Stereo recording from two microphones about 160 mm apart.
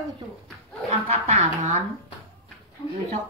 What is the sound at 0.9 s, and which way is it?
Speech, 45° right (ahead or behind).